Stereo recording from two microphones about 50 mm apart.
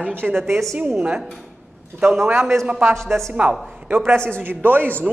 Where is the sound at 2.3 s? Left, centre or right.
Right.